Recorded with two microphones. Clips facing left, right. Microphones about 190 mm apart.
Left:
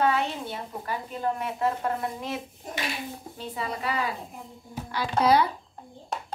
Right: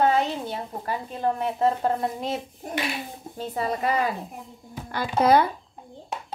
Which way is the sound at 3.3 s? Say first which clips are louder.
Right 7 dB; 45° right (ahead or behind).